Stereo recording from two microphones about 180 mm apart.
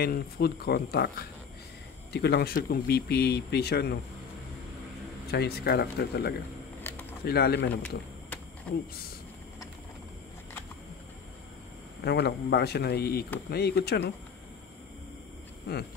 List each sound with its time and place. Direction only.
0.0 s speech: 60° left (ahead or behind)
5.3 s speech: 60° left (ahead or behind)
6.8 s a sound: 10° left (ahead or behind)
7.2 s speech: 60° left (ahead or behind)
8.7 s speech: 5° left (ahead or behind)
12.0 s speech: 65° left (ahead or behind)